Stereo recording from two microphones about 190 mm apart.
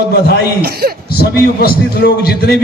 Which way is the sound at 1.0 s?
55° left (ahead or behind).